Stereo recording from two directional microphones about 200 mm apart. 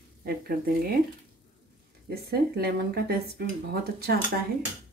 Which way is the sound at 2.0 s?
50° right (ahead or behind).